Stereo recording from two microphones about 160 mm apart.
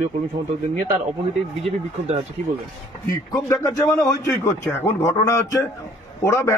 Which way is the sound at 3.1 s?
20° left (ahead or behind).